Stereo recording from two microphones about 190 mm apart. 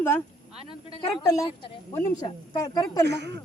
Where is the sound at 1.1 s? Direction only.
20° left (ahead or behind).